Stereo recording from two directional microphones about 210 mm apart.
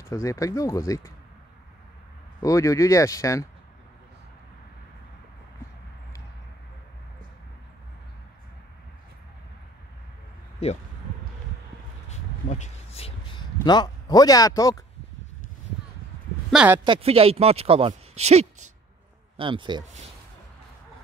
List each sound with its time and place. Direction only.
0.0 s speech: 15° left (ahead or behind)
2.4 s speech: 15° left (ahead or behind)
10.6 s speech: 30° left (ahead or behind)
12.1 s a sound: 30° left (ahead or behind); by 14.9 s 15° left (ahead or behind)
16.4 s speech: 5° right (ahead or behind)
16.8 s speech: 25° right (ahead or behind)